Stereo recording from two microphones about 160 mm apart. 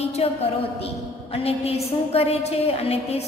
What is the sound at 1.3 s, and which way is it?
A woman's voice, 40° left (ahead or behind).